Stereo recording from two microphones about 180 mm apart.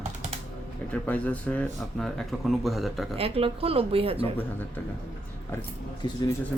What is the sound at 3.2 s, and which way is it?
A woman's voice, 35° right (ahead or behind).